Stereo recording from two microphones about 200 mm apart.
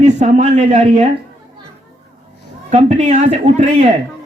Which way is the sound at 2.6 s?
35° right (ahead or behind).